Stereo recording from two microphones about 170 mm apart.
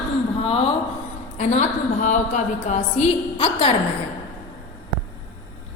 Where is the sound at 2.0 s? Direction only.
45° left (ahead or behind).